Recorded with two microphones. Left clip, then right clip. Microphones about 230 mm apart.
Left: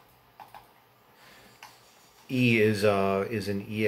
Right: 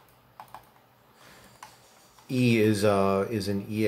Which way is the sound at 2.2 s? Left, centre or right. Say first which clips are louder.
Even; centre.